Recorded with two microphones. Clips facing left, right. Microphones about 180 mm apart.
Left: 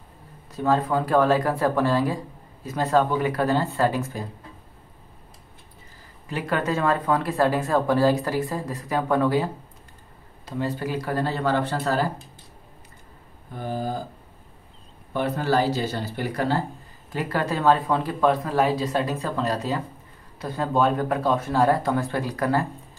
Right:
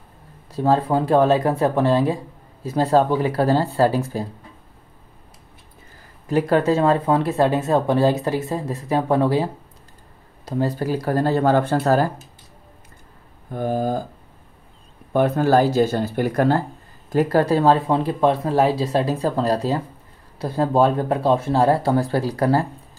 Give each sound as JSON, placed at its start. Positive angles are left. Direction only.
{"t": 0.5, "sound": "speech", "side_deg": -30}
{"t": 6.2, "sound": "speech", "side_deg": -40}
{"t": 13.5, "sound": "speech", "side_deg": -50}
{"t": 15.1, "sound": "speech", "side_deg": -50}